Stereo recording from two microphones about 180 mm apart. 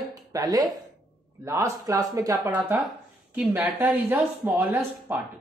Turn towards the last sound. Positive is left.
turn(degrees=-10)  # may be behind; listen again after turning